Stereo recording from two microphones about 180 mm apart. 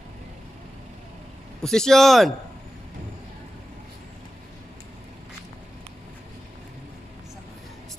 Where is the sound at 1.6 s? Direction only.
5° left (ahead or behind).